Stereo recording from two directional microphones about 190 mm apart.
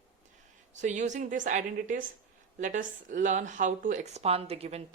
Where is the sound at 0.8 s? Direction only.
40° right (ahead or behind).